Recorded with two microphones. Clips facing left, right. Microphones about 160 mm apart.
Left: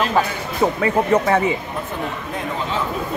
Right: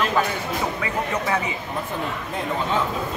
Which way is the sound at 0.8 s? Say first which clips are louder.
Left 8 dB; 50° left (ahead or behind).